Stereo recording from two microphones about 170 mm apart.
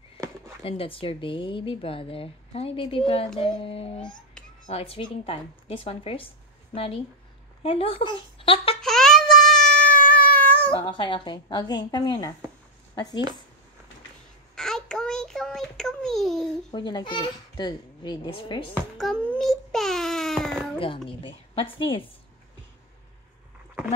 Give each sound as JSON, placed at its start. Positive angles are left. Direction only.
{"t": 0.7, "sound": "a woman's voice", "side_deg": 35}
{"t": 8.8, "sound": "a sound", "side_deg": 0}
{"t": 10.0, "sound": "cat", "side_deg": 10}
{"t": 10.7, "sound": "a child's voice", "side_deg": 30}
{"t": 14.5, "sound": "child singing", "side_deg": 5}
{"t": 16.7, "sound": "a child's voice", "side_deg": 25}
{"t": 18.9, "sound": "a child's voice", "side_deg": 0}
{"t": 19.3, "sound": "baby cry", "side_deg": 0}
{"t": 21.1, "sound": "a woman's voice", "side_deg": 30}